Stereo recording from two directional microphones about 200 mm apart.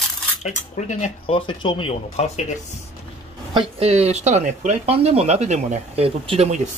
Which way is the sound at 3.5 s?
30° right (ahead or behind).